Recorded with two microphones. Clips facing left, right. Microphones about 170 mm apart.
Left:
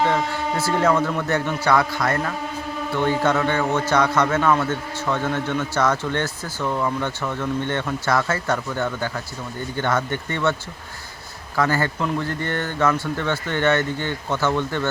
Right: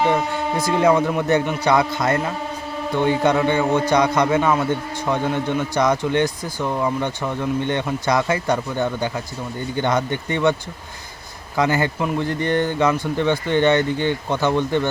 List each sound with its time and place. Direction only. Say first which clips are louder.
0.0 s a man's voice: right 2 dB; 15° right (ahead or behind)
11.5 s a man's voice: right 2 dB; 15° right (ahead or behind)